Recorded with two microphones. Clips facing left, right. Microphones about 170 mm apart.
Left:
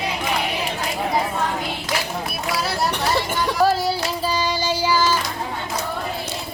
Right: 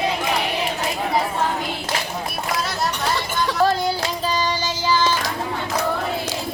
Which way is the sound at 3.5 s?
10° left (ahead or behind).